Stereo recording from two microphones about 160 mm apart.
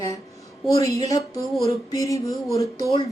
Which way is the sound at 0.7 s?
20° left (ahead or behind).